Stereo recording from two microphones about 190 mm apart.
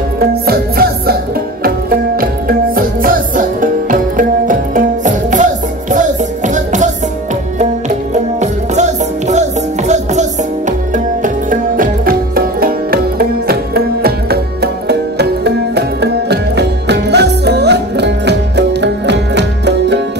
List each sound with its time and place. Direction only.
0.3 s music: 55° right (ahead or behind)
2.1 s music: 50° right (ahead or behind)
8.1 s music: 40° right (ahead or behind)
11.2 s music: 45° right (ahead or behind); by 20.0 s 65° right (ahead or behind)